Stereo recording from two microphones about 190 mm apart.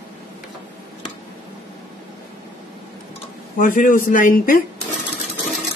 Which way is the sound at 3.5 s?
45° left (ahead or behind).